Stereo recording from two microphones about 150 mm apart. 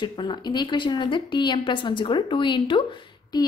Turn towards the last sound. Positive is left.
turn(degrees=30)  # may be behind; listen again after turning